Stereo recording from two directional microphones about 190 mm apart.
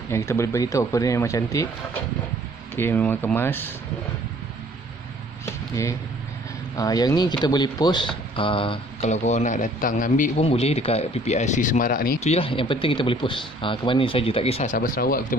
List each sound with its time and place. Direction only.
0.1 s speech: 15° left (ahead or behind)
2.7 s speech: 10° left (ahead or behind)
5.4 s a sound: 15° left (ahead or behind)
6.8 s a man's voice: 20° left (ahead or behind); by 12.3 s 50° left (ahead or behind)
12.3 s speech: 30° left (ahead or behind); by 15.3 s 50° left (ahead or behind)